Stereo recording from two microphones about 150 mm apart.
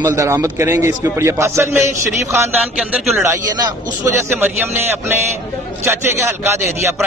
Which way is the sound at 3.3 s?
25° right (ahead or behind).